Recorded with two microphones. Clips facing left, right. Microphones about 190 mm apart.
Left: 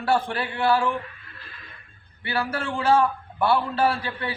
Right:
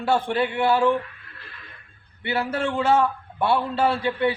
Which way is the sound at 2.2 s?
25° right (ahead or behind).